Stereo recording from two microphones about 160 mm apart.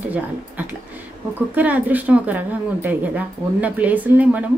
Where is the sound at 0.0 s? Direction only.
10° right (ahead or behind).